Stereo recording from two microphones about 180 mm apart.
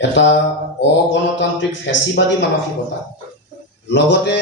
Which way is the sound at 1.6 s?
80° left.